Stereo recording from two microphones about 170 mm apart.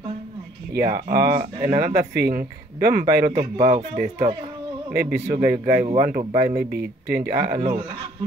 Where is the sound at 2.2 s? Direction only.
70° right (ahead or behind).